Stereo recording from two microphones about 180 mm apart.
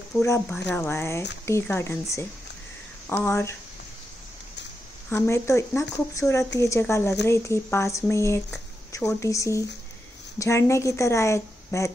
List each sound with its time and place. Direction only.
0.2 s speech: 10° left (ahead or behind)
5.1 s speech: 15° left (ahead or behind)